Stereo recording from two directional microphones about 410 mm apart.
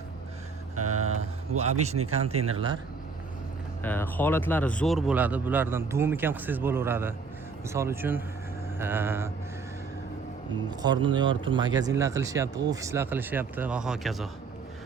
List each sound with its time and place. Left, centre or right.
0.8 s vehicle: right
2.1 s speech: centre
3.8 s speech: centre
10.7 s speech: centre